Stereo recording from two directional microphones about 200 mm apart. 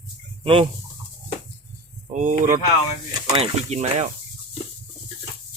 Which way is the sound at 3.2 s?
25° right (ahead or behind).